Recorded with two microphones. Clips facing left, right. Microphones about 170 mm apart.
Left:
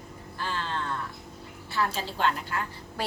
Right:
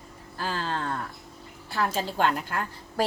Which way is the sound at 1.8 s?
45° right (ahead or behind).